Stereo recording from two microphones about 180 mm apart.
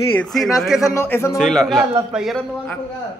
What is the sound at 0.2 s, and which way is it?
Speech, centre (ahead or behind).